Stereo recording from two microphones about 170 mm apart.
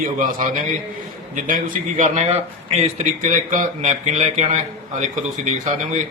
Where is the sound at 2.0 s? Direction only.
40° right (ahead or behind).